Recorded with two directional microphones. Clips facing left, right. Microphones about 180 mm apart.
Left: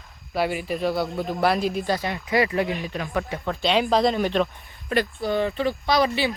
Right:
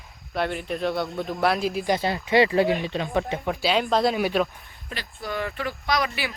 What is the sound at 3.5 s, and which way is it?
Speech, 5° right (ahead or behind).